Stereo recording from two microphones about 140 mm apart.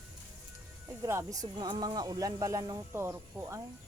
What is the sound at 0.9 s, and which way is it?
Speech, 20° right (ahead or behind).